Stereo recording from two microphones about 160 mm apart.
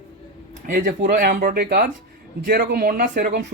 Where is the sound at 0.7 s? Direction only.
55° right (ahead or behind).